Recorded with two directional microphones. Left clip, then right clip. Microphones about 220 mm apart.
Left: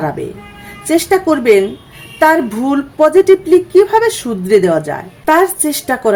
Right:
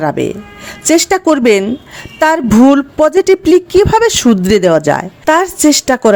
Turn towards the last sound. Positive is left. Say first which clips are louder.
# right 6 dB
turn(degrees=-35)  # may be behind; listen again after turning